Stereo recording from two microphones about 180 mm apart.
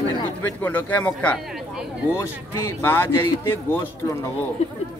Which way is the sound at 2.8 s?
10° left (ahead or behind).